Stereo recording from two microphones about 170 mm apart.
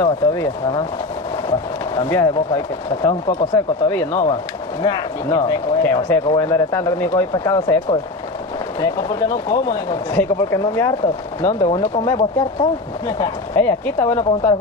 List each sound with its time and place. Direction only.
0.0 s speech: 20° left (ahead or behind)
3.5 s speech: 15° left (ahead or behind)
4.8 s speech: 25° left (ahead or behind)
13.6 s speech: 10° left (ahead or behind)